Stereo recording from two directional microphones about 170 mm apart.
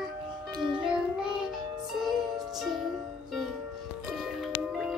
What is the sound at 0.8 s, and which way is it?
Child singing, 5° right (ahead or behind).